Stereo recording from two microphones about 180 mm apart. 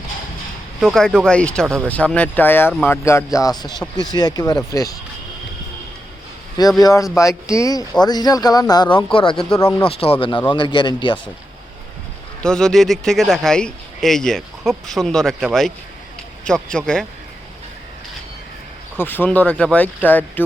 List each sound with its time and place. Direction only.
0.8 s speech: centre (ahead or behind); by 4.9 s 20° left (ahead or behind)
6.8 s speech: 20° left (ahead or behind)
9.6 s speech: 15° left (ahead or behind)
9.8 s speech: 30° left (ahead or behind)
12.4 s speech: 5° left (ahead or behind)
18.9 s speech: 10° left (ahead or behind)